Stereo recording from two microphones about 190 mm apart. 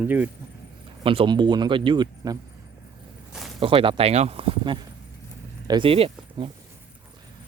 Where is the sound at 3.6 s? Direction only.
30° right (ahead or behind).